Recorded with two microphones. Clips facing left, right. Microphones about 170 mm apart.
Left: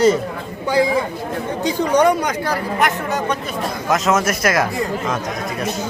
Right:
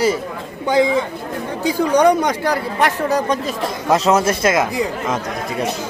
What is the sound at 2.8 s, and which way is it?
Speech, 35° right (ahead or behind).